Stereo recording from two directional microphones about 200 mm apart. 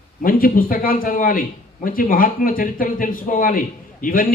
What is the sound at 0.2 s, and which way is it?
A man's voice, 45° left (ahead or behind).